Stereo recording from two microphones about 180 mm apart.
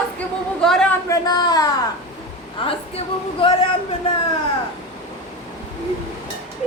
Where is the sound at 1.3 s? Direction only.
20° left (ahead or behind).